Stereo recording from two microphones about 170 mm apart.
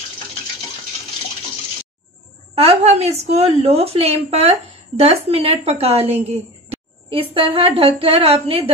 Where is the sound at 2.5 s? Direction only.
35° right (ahead or behind).